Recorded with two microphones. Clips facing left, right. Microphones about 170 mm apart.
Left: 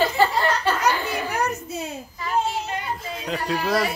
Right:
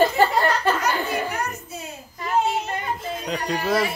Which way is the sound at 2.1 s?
50° right (ahead or behind).